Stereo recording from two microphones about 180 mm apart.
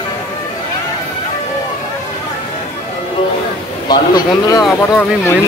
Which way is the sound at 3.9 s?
20° left (ahead or behind).